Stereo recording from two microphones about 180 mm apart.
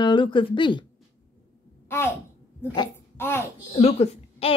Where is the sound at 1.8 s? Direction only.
15° left (ahead or behind).